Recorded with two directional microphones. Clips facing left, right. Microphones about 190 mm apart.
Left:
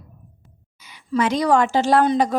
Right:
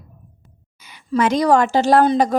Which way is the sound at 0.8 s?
50° right (ahead or behind).